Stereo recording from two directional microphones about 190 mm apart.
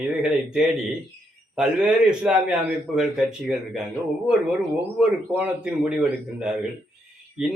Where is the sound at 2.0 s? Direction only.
5° right (ahead or behind).